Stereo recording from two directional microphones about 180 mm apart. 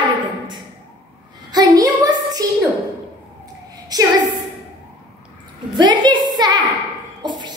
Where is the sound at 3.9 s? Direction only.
20° right (ahead or behind).